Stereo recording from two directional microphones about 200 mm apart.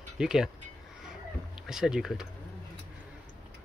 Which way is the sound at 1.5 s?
5° right (ahead or behind).